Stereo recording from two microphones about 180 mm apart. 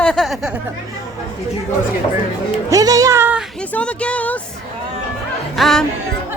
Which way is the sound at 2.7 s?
20° right (ahead or behind).